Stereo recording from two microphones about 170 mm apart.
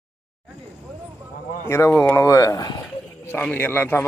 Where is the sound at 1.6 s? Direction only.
15° left (ahead or behind).